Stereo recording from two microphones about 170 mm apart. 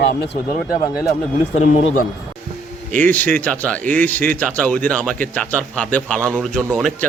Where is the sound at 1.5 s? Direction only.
45° left (ahead or behind).